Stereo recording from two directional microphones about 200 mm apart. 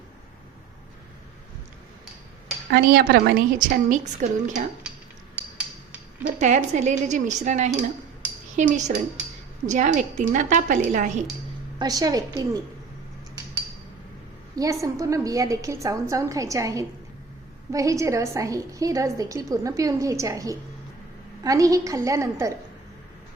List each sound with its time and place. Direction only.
2.6 s a woman's voice: 50° right (ahead or behind)
5.4 s a sound: 5° right (ahead or behind)
6.2 s speech: 35° right (ahead or behind)
11.8 s a woman's voice: 20° right (ahead or behind)
14.5 s a woman's voice: 15° right (ahead or behind)